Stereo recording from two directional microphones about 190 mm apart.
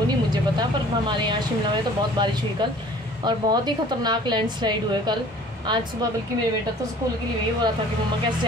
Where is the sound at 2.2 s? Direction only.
20° right (ahead or behind).